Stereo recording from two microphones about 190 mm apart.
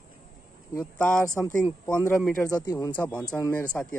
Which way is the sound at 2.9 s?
10° left (ahead or behind).